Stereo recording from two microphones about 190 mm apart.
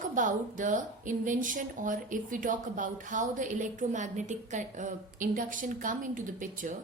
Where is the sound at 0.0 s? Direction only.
40° right (ahead or behind).